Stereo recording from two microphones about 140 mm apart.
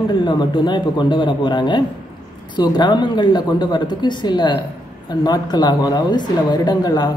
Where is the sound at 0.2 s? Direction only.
30° left (ahead or behind).